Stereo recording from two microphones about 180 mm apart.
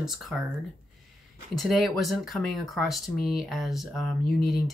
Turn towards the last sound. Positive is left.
turn(degrees=0)  # may be behind; listen again after turning